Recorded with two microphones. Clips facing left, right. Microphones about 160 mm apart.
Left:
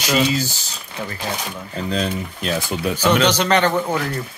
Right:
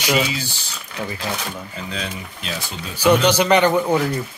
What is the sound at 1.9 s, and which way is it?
Speech, 45° left (ahead or behind).